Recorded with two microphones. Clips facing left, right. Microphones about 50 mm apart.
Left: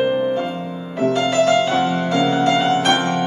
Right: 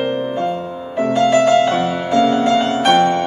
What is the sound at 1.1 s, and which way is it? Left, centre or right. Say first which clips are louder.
Music: right 4 dB; centre.